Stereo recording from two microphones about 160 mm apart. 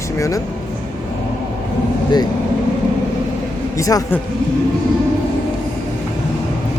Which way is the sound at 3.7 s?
20° left (ahead or behind).